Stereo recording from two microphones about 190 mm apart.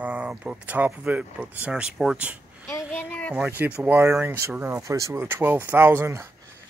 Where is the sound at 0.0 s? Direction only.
5° right (ahead or behind).